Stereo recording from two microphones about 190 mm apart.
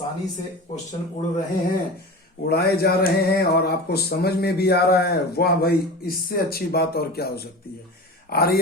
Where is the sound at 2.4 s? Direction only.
55° left (ahead or behind).